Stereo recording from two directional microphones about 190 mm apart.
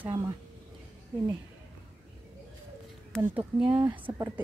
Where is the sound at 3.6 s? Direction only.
5° right (ahead or behind).